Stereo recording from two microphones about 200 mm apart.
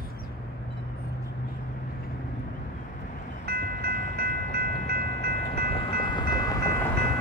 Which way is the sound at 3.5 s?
55° right (ahead or behind).